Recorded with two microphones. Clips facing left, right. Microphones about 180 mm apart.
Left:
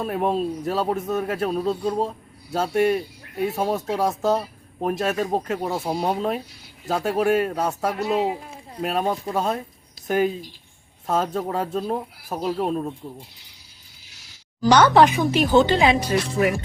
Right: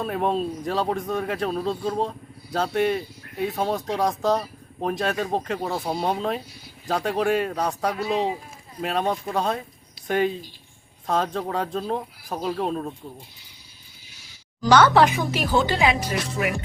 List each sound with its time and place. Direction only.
0.0 s a man's voice: 5° left (ahead or behind)
14.7 s speech: 15° left (ahead or behind)